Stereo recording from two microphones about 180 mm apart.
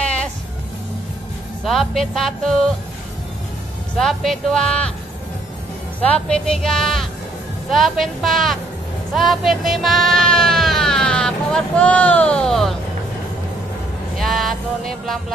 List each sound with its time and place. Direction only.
0.0 s music: 5° left (ahead or behind)
1.6 s music: centre (ahead or behind)
4.0 s music: centre (ahead or behind)
5.9 s music: 5° left (ahead or behind)
14.1 s music: centre (ahead or behind)